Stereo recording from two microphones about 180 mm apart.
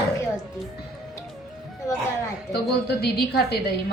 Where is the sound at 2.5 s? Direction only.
65° left (ahead or behind).